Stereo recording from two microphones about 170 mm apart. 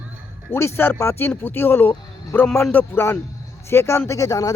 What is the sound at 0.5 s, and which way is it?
Speech, 15° left (ahead or behind).